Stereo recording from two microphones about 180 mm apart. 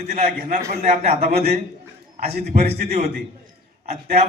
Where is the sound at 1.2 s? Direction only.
60° right (ahead or behind).